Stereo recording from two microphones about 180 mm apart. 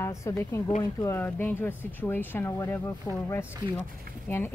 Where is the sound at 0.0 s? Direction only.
15° left (ahead or behind).